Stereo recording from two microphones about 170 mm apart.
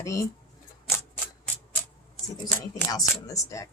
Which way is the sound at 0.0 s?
20° left (ahead or behind).